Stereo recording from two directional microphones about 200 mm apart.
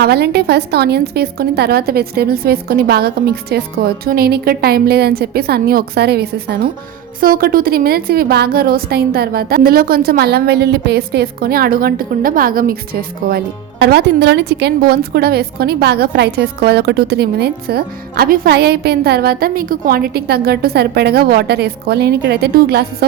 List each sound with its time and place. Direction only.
0.0 s a woman's voice: 55° right (ahead or behind)